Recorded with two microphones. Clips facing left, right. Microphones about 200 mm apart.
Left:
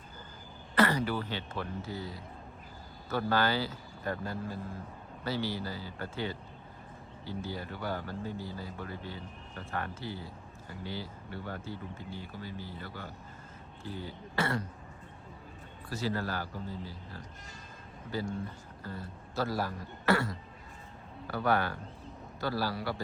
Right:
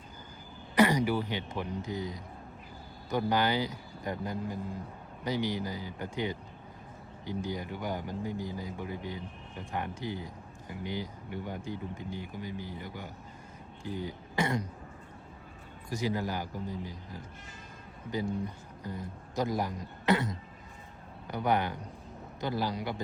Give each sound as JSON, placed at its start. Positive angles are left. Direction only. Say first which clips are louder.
{"t": 0.8, "sound": "speech", "louder": "right 3 dB", "side_deg": -15}
{"t": 15.9, "sound": "speech", "louder": "right 2 dB", "side_deg": -15}
{"t": 18.4, "sound": "a man's voice", "louder": "right 3 dB", "side_deg": -15}